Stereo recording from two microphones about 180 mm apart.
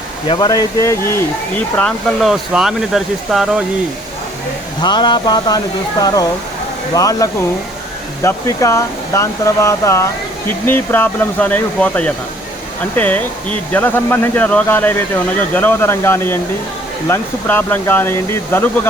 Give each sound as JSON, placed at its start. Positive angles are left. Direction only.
{"t": 0.3, "sound": "speech", "side_deg": 20}
{"t": 4.8, "sound": "speech", "side_deg": 25}